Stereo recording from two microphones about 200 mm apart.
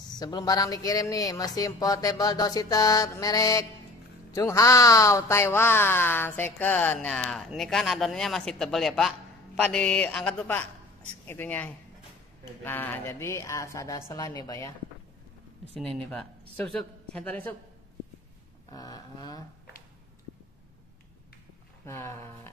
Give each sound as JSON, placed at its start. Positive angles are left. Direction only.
{"t": 0.1, "sound": "speech", "side_deg": 20}
{"t": 15.8, "sound": "speech", "side_deg": 5}
{"t": 18.7, "sound": "speech", "side_deg": 20}
{"t": 21.8, "sound": "speech", "side_deg": 15}